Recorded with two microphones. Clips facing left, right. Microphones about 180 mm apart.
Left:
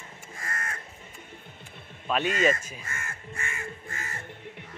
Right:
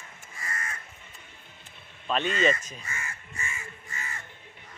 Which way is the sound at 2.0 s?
10° left (ahead or behind).